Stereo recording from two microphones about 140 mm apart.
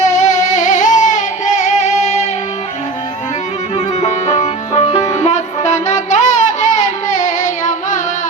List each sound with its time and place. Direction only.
0.0 s music: 60° left (ahead or behind)
3.8 s music: 55° left (ahead or behind)
5.1 s a sound: 55° left (ahead or behind)